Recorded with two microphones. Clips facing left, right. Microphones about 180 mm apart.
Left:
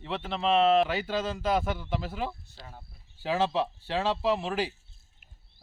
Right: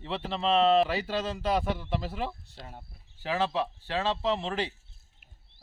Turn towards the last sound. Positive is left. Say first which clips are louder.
# left 2 dB
turn(degrees=5)  # may be behind; listen again after turning